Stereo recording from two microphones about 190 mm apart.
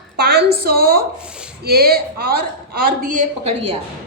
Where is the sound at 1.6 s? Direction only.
55° right (ahead or behind).